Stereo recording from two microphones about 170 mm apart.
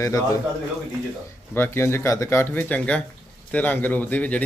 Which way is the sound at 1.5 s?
15° left (ahead or behind).